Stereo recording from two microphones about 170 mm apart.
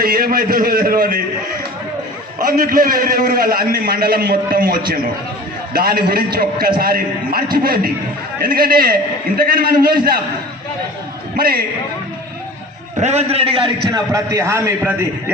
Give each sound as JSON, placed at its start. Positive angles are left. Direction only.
{"t": 0.0, "sound": "a man's voice", "side_deg": -60}
{"t": 2.4, "sound": "a man's voice", "side_deg": -55}
{"t": 11.3, "sound": "a man's voice", "side_deg": -65}
{"t": 13.0, "sound": "a man's voice", "side_deg": -40}
{"t": 13.9, "sound": "a man's voice", "side_deg": -20}